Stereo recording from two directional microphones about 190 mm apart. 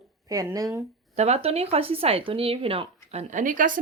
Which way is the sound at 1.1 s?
35° right (ahead or behind).